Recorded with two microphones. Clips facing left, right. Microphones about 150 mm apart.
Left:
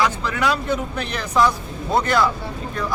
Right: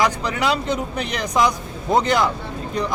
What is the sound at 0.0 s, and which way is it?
A man's voice, 15° right (ahead or behind).